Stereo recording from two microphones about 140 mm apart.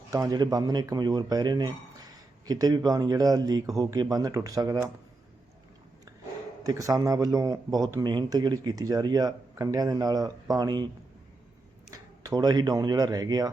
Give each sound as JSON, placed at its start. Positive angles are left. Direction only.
{"t": 0.3, "sound": "speech", "side_deg": -25}
{"t": 6.6, "sound": "speech", "side_deg": -25}
{"t": 11.9, "sound": "speech", "side_deg": -25}